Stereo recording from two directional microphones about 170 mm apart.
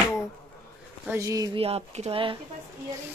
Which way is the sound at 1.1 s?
20° right (ahead or behind).